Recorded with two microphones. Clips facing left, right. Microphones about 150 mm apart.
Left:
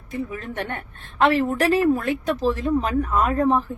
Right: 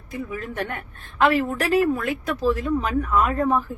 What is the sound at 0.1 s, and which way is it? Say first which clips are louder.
A woman's voice: left 1 dB; 30° left (ahead or behind).